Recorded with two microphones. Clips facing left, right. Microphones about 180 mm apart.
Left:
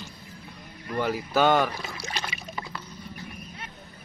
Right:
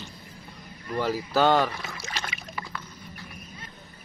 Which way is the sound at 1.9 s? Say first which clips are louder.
Left 2 dB; 35° left (ahead or behind).